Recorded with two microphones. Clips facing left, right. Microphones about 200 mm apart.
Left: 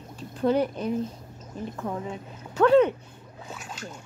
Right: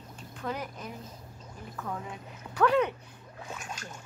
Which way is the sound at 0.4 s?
30° left (ahead or behind).